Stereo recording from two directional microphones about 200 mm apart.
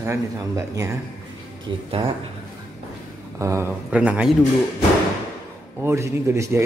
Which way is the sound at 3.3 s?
15° right (ahead or behind).